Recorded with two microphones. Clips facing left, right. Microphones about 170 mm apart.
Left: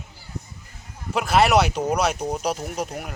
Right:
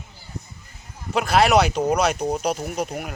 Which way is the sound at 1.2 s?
Centre (ahead or behind).